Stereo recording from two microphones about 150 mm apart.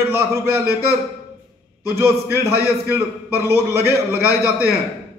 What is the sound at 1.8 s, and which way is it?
A man's voice, 15° right (ahead or behind).